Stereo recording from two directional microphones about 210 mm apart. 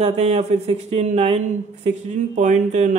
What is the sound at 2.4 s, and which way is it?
Speech, 35° right (ahead or behind).